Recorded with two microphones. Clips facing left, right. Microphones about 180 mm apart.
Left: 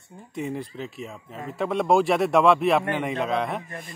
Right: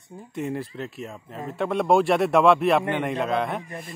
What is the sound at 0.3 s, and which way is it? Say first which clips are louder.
Speech: right 1 dB; centre (ahead or behind).